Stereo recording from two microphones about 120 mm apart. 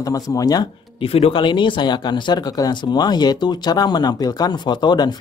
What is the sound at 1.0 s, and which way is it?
Speech, 55° left (ahead or behind).